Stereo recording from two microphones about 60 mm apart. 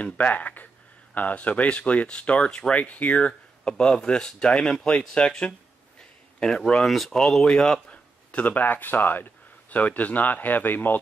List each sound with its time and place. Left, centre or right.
0.0 s speech: left
6.4 s speech: centre; by 11.0 s left